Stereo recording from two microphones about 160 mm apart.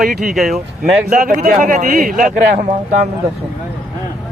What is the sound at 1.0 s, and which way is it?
A man's voice, 60° right (ahead or behind).